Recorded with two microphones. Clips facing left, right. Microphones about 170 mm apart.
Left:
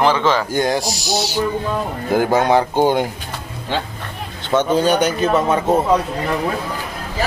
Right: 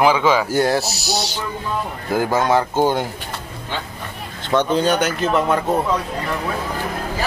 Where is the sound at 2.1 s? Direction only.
20° left (ahead or behind).